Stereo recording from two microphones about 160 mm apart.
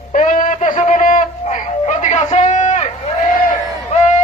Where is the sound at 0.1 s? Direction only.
55° left (ahead or behind).